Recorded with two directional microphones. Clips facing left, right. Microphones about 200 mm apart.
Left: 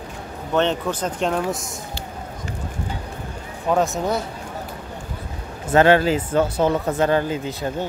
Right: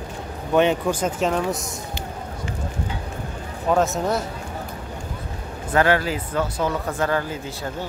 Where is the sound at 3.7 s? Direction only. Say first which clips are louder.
Even; centre (ahead or behind).